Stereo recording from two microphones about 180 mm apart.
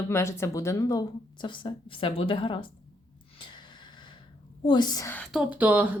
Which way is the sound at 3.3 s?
25° left (ahead or behind).